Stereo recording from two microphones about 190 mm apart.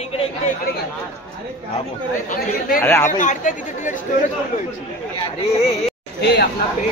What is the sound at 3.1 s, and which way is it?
Speech, 40° left (ahead or behind).